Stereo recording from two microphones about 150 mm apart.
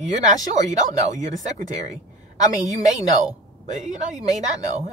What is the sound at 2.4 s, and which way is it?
A woman's voice, 55° right (ahead or behind).